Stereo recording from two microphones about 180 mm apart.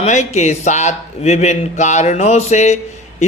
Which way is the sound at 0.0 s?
40° left (ahead or behind).